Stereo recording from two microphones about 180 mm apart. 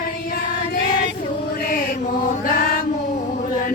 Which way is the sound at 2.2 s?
55° left (ahead or behind).